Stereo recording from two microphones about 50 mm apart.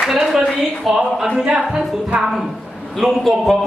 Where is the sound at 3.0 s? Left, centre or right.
Centre.